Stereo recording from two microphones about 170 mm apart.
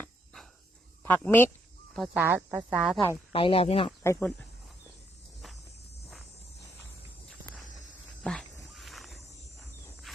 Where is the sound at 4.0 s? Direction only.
15° left (ahead or behind).